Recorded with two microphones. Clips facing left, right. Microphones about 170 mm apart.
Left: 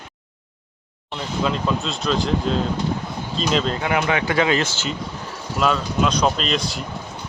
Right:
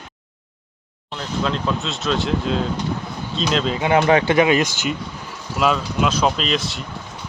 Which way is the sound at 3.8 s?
30° right (ahead or behind).